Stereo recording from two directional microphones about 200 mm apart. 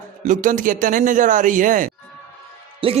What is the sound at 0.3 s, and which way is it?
Speech, 40° right (ahead or behind).